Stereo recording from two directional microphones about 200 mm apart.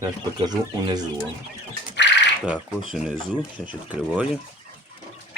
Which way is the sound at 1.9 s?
60° left (ahead or behind).